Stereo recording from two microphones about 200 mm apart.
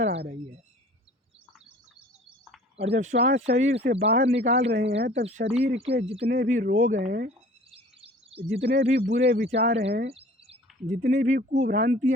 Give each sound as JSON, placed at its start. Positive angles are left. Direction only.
{"t": 2.8, "sound": "speech", "side_deg": -35}
{"t": 4.5, "sound": "speech", "side_deg": -60}
{"t": 5.2, "sound": "speech", "side_deg": -35}
{"t": 6.2, "sound": "speech", "side_deg": -45}
{"t": 7.7, "sound": "a sound", "side_deg": -30}
{"t": 9.1, "sound": "speech", "side_deg": -55}
{"t": 9.6, "sound": "speech", "side_deg": -30}
{"t": 10.1, "sound": "bird", "side_deg": -30}
{"t": 11.0, "sound": "speech", "side_deg": -40}